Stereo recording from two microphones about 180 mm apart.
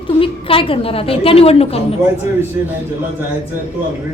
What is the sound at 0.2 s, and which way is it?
A woman's voice, 30° left (ahead or behind).